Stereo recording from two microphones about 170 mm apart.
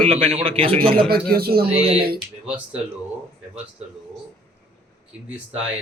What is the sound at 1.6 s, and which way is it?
Speech, 35° right (ahead or behind).